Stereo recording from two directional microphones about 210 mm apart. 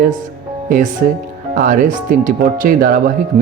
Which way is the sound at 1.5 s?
40° right (ahead or behind).